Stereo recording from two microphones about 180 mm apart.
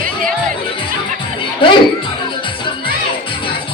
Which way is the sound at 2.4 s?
30° left (ahead or behind).